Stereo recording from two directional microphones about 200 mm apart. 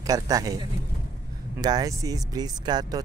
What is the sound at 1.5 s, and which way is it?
Speech, 20° right (ahead or behind).